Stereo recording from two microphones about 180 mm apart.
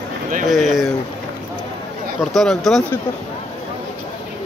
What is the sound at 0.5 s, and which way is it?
Speech, centre (ahead or behind).